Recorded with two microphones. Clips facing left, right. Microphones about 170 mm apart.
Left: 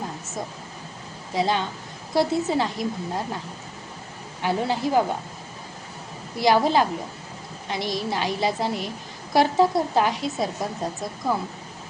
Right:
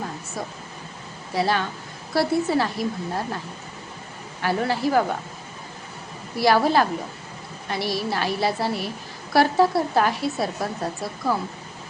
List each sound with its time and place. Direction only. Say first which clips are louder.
1.3 s a woman's voice: right 1 dB; 20° left (ahead or behind)
4.4 s a woman's voice: right 1 dB; 20° left (ahead or behind)
6.3 s a woman's voice: right 1 dB; 20° left (ahead or behind)